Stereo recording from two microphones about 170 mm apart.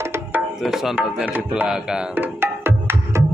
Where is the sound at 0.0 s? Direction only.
15° right (ahead or behind).